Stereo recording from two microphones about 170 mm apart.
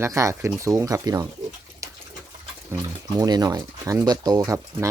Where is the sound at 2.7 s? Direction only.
20° right (ahead or behind).